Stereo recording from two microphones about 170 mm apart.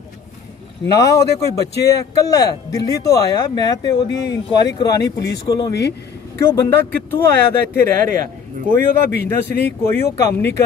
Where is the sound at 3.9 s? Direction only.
80° left.